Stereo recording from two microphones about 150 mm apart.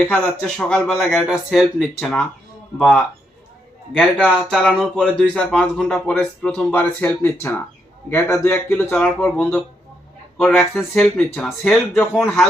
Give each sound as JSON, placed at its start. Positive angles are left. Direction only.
{"t": 0.0, "sound": "a man's voice", "side_deg": 5}
{"t": 10.6, "sound": "speech", "side_deg": 5}